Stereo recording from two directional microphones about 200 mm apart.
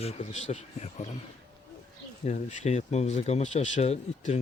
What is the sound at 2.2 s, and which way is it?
Speech, 35° left (ahead or behind).